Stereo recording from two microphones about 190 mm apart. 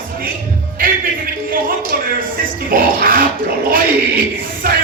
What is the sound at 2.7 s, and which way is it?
Music, 50° right (ahead or behind).